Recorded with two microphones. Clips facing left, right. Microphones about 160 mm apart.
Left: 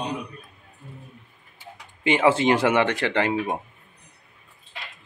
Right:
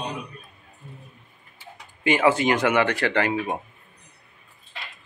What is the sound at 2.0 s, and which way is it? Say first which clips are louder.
Speech: left 1 dB; 20° left (ahead or behind).